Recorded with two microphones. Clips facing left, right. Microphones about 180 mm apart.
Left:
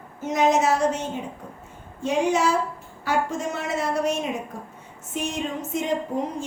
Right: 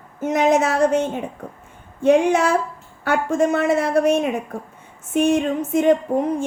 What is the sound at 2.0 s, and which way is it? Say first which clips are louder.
A woman's voice: right 6 dB; 60° right (ahead or behind).